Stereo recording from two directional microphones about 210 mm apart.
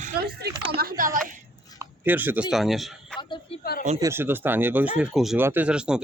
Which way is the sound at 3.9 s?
15° right (ahead or behind).